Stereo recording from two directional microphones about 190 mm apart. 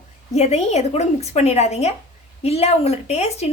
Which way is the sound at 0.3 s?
35° left (ahead or behind).